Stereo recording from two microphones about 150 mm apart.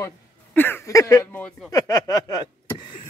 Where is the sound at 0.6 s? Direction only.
15° left (ahead or behind).